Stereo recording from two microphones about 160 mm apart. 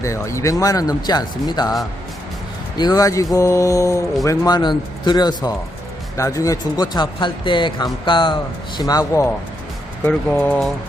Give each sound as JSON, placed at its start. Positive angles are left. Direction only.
{"t": 0.0, "sound": "a man's voice", "side_deg": 20}
{"t": 10.0, "sound": "speech", "side_deg": 10}